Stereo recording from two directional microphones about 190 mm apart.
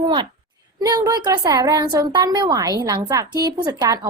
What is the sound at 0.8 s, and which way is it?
A woman's voice, 20° right (ahead or behind).